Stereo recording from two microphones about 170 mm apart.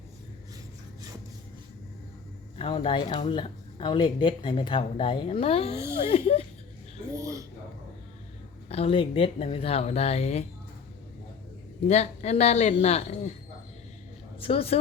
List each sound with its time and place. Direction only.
2.6 s speech: 30° left (ahead or behind)
7.1 s speech: 20° right (ahead or behind)
8.7 s speech: 35° left (ahead or behind)
11.9 s speech: 40° left (ahead or behind)
14.3 s speech: 35° left (ahead or behind)